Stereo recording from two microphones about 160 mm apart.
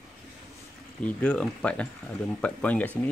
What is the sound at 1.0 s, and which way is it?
Speech, 10° left (ahead or behind).